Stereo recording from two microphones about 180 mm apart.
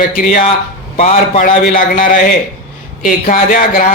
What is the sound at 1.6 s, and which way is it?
Speech, 50° left (ahead or behind).